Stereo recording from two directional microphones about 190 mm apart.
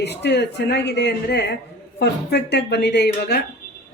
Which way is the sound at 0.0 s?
60° left (ahead or behind).